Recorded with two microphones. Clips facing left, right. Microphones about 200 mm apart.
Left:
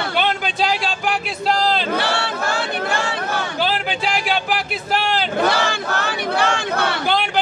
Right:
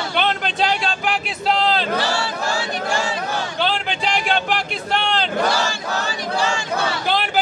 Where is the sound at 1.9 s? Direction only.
60° left (ahead or behind).